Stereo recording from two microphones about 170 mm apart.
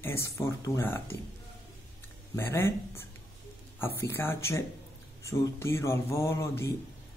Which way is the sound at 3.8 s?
15° left (ahead or behind).